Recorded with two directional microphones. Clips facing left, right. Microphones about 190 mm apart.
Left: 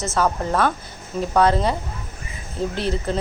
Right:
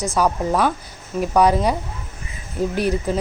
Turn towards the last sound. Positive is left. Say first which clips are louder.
# right 3 dB
turn(degrees=-10)  # may be behind; listen again after turning